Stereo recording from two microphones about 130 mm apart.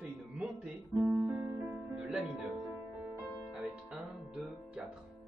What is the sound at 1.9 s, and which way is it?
Music, 5° right (ahead or behind).